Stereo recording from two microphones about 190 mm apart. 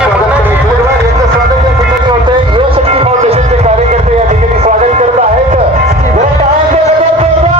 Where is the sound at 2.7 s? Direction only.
30° right (ahead or behind).